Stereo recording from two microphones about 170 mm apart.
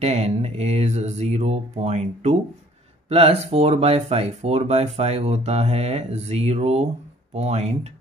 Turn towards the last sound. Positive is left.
turn(degrees=-40)  # may be behind; listen again after turning